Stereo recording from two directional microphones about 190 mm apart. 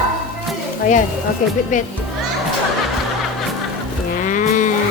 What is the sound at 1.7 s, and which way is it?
Speech, 40° left (ahead or behind).